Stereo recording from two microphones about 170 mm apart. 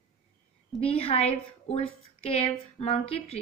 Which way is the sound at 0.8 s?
35° left (ahead or behind).